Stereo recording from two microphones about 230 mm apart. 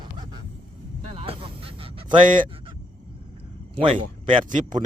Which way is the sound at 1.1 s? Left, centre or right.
Right.